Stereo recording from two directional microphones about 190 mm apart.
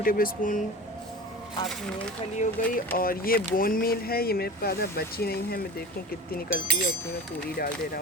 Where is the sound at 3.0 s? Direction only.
50° left (ahead or behind).